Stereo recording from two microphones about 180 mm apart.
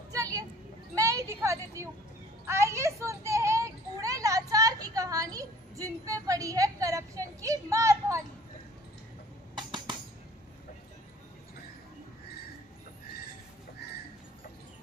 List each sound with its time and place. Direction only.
0.1 s a sound: 20° right (ahead or behind)
6.2 s speech: 20° right (ahead or behind)
9.6 s music: 25° right (ahead or behind)